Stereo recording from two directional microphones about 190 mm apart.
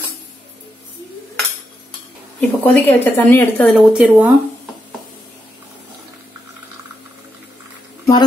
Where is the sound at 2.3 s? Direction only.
10° left (ahead or behind).